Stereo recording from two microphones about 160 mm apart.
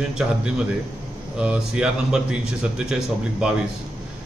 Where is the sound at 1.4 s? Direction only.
5° right (ahead or behind).